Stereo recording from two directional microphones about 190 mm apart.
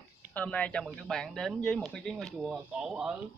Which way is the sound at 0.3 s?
5° left (ahead or behind).